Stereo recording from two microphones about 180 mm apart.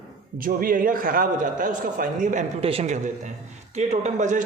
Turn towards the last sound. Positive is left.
turn(degrees=-45)  # may be behind; listen again after turning